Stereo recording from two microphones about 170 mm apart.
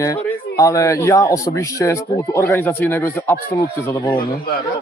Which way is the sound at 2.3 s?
10° left (ahead or behind).